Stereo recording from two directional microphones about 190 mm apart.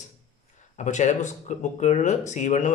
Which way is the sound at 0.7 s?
40° left (ahead or behind).